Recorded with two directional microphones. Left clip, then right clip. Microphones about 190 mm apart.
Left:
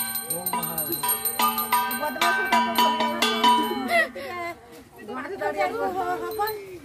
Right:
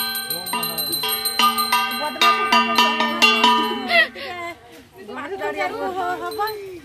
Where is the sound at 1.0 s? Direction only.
25° right (ahead or behind).